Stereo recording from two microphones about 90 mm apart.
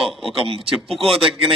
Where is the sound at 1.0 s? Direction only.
90° right.